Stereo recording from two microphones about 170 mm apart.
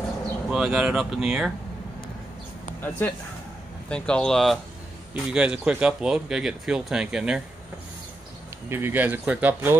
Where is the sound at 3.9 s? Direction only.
5° left (ahead or behind).